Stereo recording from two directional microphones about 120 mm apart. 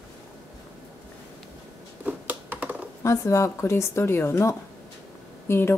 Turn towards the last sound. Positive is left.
turn(degrees=20)  # may be behind; listen again after turning